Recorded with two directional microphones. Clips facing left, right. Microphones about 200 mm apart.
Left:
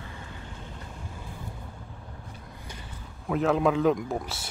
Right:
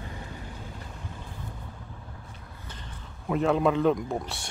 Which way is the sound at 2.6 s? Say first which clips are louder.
Even; 10° left (ahead or behind).